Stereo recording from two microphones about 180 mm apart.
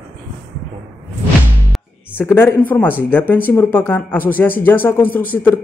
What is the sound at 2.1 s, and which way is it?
Speech, 10° left (ahead or behind).